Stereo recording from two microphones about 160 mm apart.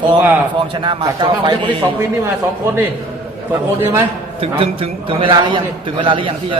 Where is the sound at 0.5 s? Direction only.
30° right (ahead or behind).